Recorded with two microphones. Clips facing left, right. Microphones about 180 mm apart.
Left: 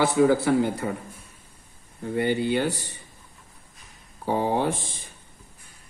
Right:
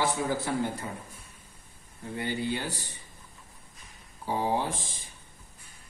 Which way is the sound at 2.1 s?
65° left (ahead or behind).